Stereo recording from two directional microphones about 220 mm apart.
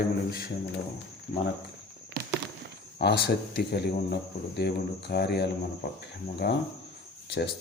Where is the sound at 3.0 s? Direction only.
50° left (ahead or behind).